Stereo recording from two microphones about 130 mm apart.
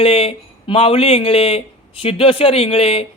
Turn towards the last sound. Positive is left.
turn(degrees=50)  # may be behind; listen again after turning